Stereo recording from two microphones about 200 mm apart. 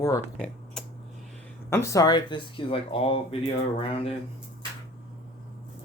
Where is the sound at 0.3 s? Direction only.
5° left (ahead or behind).